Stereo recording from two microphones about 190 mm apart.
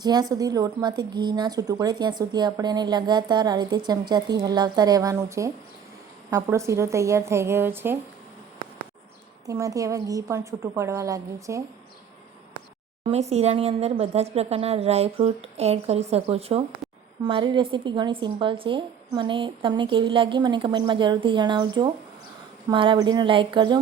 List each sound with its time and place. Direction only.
0.0 s a woman's voice: 20° right (ahead or behind)
9.5 s a woman's voice: 15° right (ahead or behind)
13.1 s a woman's voice: 35° right (ahead or behind)